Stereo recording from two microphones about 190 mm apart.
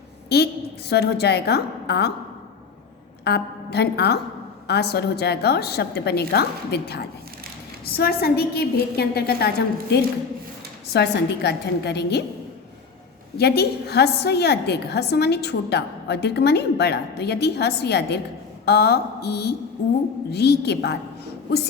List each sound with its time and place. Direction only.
0.3 s a woman's voice: 55° left (ahead or behind)
3.2 s a woman's voice: 60° left (ahead or behind)
10.9 s a woman's voice: 60° left (ahead or behind)
13.3 s a woman's voice: 60° left (ahead or behind)